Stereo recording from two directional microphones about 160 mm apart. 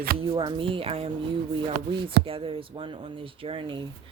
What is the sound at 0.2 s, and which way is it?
Speech, 35° right (ahead or behind).